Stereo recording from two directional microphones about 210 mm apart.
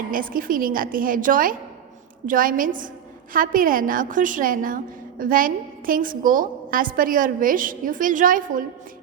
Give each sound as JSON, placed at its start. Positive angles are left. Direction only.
{"t": 0.1, "sound": "a woman's voice", "side_deg": -40}